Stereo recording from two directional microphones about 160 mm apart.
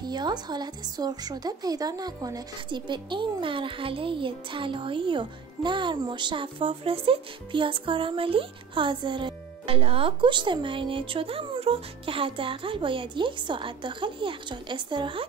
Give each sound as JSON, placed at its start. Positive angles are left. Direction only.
{"t": 0.0, "sound": "a woman's voice", "side_deg": -25}